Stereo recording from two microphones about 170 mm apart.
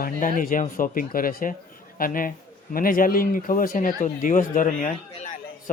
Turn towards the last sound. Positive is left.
turn(degrees=45)  # may be behind; listen again after turning